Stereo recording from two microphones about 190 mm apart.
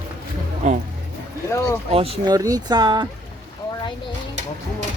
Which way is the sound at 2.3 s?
20° right (ahead or behind).